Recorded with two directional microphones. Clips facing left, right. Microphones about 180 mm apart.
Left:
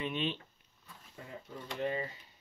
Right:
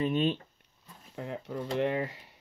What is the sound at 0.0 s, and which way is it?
Speech, 45° right (ahead or behind).